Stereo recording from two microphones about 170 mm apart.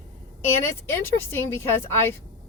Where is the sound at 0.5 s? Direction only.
15° left (ahead or behind).